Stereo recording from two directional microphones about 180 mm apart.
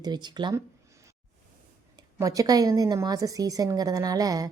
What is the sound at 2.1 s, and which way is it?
A woman's voice, 20° right (ahead or behind).